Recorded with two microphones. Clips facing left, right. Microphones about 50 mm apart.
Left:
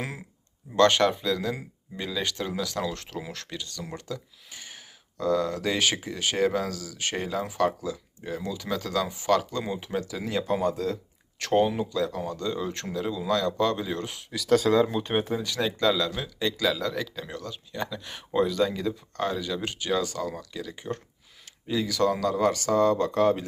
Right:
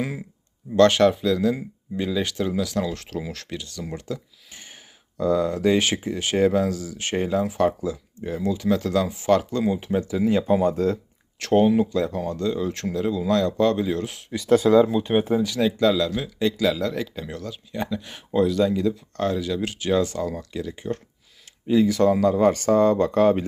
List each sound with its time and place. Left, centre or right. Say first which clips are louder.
0.8 s speech: right 4 dB; centre
3.1 s speech: right 5 dB; centre
3.3 s speech: right 3 dB; centre
10.8 s speech: right 7 dB; right
11.3 s speech: right 5 dB; centre
14.4 s speech: right 5 dB; centre
14.8 s speech: right 6 dB; centre
15.2 s speech: right 7 dB; centre
15.4 s speech: right 5 dB; centre
20.3 s speech: right 6 dB; centre
22.3 s speech: right 5 dB; right
22.5 s speech: right 4 dB; right